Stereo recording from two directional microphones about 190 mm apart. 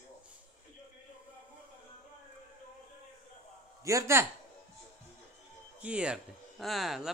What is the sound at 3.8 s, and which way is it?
Speech, 15° right (ahead or behind).